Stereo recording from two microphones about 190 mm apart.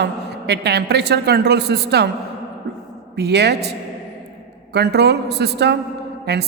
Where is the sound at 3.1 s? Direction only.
60° right (ahead or behind).